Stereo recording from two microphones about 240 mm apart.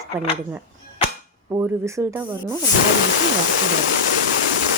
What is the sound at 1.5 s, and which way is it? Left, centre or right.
Speech, centre.